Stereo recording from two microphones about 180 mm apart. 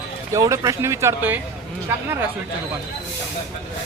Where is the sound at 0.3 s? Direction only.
20° right (ahead or behind).